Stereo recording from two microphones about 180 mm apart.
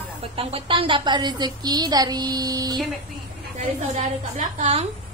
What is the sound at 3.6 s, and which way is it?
A woman's voice, 40° right (ahead or behind).